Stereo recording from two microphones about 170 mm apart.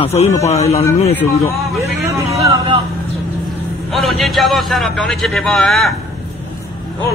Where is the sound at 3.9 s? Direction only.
Centre (ahead or behind).